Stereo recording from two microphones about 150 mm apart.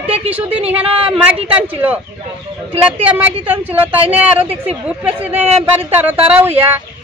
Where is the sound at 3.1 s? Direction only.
10° right (ahead or behind).